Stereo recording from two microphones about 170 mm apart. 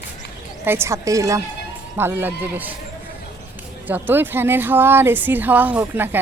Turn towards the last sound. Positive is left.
turn(degrees=-10)  # may be behind; listen again after turning